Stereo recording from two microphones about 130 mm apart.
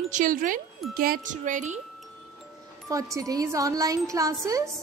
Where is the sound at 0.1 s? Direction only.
90° right.